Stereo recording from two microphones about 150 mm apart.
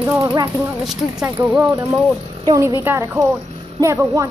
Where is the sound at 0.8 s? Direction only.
Centre (ahead or behind).